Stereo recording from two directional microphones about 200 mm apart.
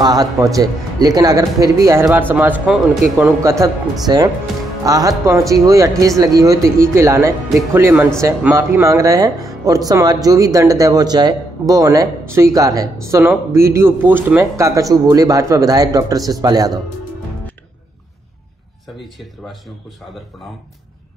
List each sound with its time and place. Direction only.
0.0 s speech: 20° right (ahead or behind); by 3.3 s 5° right (ahead or behind)
3.4 s speech: 15° right (ahead or behind)